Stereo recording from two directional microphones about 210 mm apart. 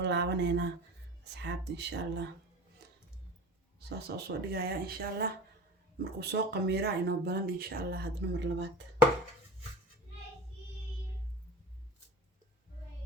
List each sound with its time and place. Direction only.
0.0 s speech: 55° right (ahead or behind)
3.8 s speech: 50° right (ahead or behind)